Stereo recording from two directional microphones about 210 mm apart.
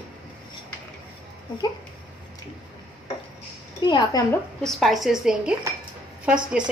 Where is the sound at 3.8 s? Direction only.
20° left (ahead or behind).